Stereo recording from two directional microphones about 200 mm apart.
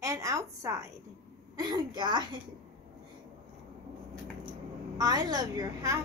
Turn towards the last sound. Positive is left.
turn(degrees=-15)  # may be behind; listen again after turning